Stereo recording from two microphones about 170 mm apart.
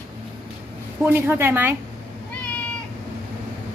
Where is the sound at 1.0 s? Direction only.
15° right (ahead or behind).